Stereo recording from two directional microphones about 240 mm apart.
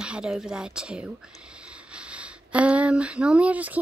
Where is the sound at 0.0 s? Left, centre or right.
Centre.